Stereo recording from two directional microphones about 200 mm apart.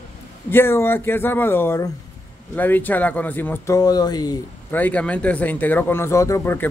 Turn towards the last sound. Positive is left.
turn(degrees=10)  # may be behind; listen again after turning